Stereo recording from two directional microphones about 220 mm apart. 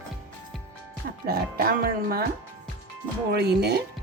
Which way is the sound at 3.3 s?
50° right (ahead or behind).